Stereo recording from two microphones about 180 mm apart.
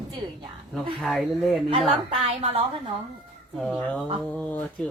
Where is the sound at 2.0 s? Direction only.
35° right (ahead or behind).